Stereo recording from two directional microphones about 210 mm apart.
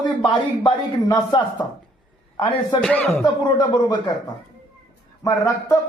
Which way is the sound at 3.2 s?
20° left (ahead or behind).